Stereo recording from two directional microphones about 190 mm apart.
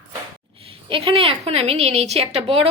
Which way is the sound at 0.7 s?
30° right (ahead or behind).